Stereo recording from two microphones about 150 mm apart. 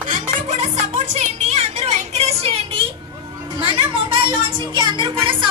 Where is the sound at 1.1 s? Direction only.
45° right (ahead or behind).